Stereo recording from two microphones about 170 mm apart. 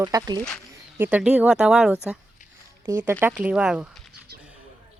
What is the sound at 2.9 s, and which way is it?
Speech, 15° right (ahead or behind).